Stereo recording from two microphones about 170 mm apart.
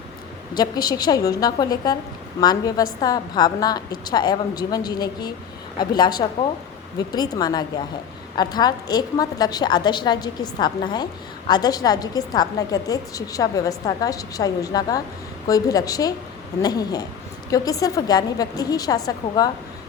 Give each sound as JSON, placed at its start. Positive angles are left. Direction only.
{"t": 0.5, "sound": "a woman's voice", "side_deg": 25}